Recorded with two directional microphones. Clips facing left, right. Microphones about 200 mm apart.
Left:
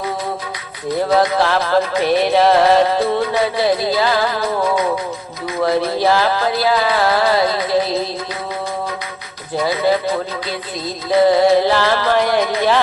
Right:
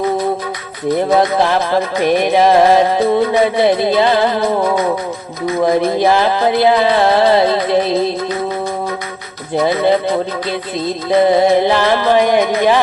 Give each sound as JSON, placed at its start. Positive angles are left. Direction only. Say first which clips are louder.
{"t": 1.1, "sound": "music", "louder": "right 1 dB", "side_deg": -20}
{"t": 9.6, "sound": "music", "louder": "right 4 dB", "side_deg": -25}
{"t": 11.3, "sound": "music", "louder": "right 1 dB", "side_deg": -20}